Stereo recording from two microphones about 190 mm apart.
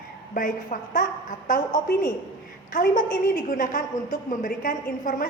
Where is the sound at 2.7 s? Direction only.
45° left (ahead or behind).